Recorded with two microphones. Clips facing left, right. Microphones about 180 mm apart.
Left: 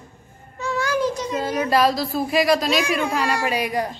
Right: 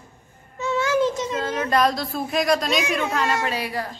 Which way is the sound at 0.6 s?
25° right (ahead or behind).